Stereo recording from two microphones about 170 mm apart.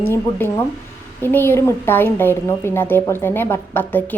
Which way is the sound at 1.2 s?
10° left (ahead or behind).